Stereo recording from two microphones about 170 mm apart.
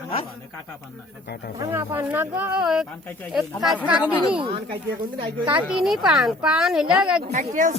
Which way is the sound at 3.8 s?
5° right (ahead or behind).